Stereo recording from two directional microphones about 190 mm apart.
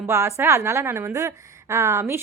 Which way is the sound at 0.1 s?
15° right (ahead or behind).